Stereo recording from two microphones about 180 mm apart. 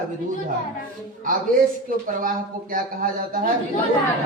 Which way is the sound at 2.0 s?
50° right (ahead or behind).